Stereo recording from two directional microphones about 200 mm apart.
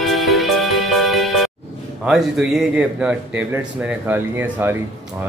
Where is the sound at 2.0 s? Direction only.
Centre (ahead or behind).